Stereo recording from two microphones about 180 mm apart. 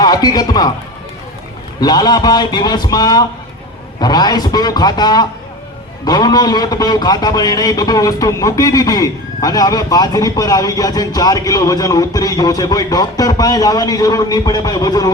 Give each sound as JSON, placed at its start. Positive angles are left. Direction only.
{"t": 0.0, "sound": "a man's voice", "side_deg": 20}
{"t": 1.8, "sound": "a man's voice", "side_deg": 25}